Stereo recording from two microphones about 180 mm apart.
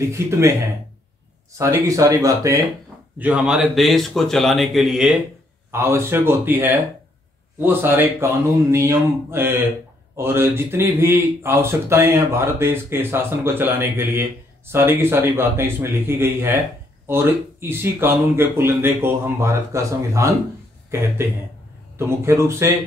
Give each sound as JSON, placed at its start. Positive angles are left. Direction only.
{"t": 0.0, "sound": "a man's voice", "side_deg": -15}
{"t": 1.6, "sound": "a man's voice", "side_deg": -15}
{"t": 3.2, "sound": "a man's voice", "side_deg": -5}
{"t": 5.7, "sound": "a man's voice", "side_deg": -15}